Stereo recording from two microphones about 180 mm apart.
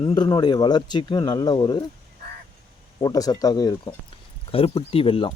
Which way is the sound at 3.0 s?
20° left (ahead or behind).